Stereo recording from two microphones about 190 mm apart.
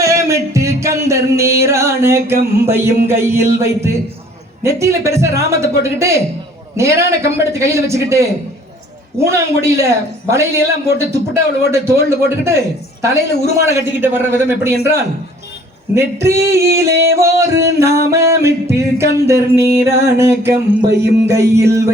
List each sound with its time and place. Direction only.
0.0 s music: 15° right (ahead or behind)
3.1 s a man's voice: 15° right (ahead or behind)
16.0 s a man's voice: 15° right (ahead or behind)
20.8 s music: 60° right (ahead or behind)
21.2 s a man's voice: 15° right (ahead or behind)